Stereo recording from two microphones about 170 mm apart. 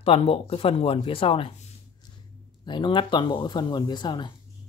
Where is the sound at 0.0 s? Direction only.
35° left (ahead or behind).